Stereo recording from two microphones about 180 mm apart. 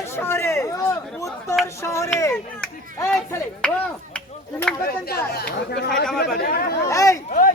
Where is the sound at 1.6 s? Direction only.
15° left (ahead or behind).